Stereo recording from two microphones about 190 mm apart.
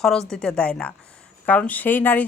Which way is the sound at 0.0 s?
Centre (ahead or behind).